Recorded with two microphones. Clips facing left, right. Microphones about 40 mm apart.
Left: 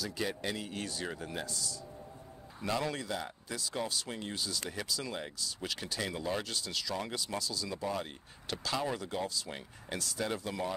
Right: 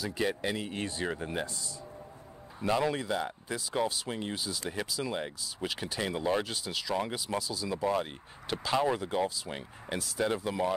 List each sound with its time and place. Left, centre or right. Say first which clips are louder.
0.0 s speech: right 4 dB; right